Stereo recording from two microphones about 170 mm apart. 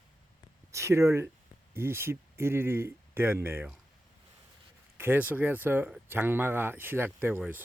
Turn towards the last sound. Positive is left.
turn(degrees=-10)  # may be behind; listen again after turning